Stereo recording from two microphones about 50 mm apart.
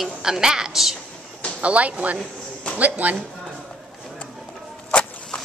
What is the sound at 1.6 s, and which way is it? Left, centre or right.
Speech, right.